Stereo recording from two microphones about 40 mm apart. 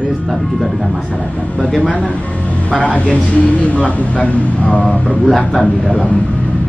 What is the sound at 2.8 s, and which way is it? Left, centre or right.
A man's voice, left.